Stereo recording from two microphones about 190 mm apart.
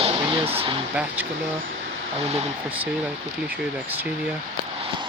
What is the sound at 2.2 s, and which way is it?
Speech, 35° right (ahead or behind).